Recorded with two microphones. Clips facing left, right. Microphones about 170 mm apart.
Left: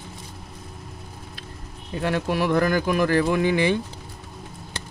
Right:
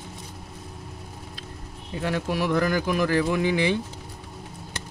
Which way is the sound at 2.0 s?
60° left (ahead or behind).